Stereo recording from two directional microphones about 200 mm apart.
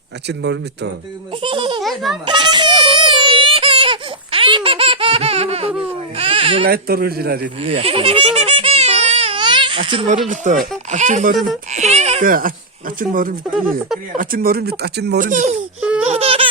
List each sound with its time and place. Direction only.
0.3 s speech: 60° right (ahead or behind)
1.4 s speech: 25° right (ahead or behind)
1.8 s a child's voice: centre (ahead or behind)
2.2 s a sound: 20° right (ahead or behind)
6.1 s speech: 30° right (ahead or behind)
6.7 s speech: 50° right (ahead or behind)
7.6 s a sound: 30° right (ahead or behind)
10.2 s speech: 40° right (ahead or behind)
11.7 s a sound: 35° right (ahead or behind)
13.0 s speech: 45° right (ahead or behind)
15.3 s speech: 40° right (ahead or behind)
15.8 s laughter: 5° right (ahead or behind)
16.0 s a sound: 30° right (ahead or behind)